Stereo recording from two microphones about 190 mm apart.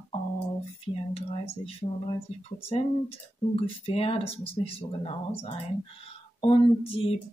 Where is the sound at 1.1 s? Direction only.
30° left (ahead or behind).